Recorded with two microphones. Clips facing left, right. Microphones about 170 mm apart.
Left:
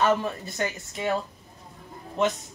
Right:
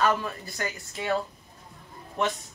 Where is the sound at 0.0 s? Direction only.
20° left (ahead or behind).